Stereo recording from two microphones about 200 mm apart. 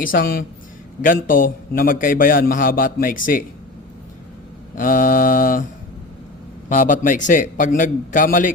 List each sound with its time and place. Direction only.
0.0 s a man's voice: 45° left (ahead or behind)
4.7 s a man's voice: 40° left (ahead or behind)
6.7 s a man's voice: 40° left (ahead or behind)